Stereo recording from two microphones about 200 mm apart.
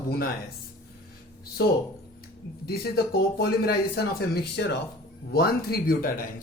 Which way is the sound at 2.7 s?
50° left (ahead or behind).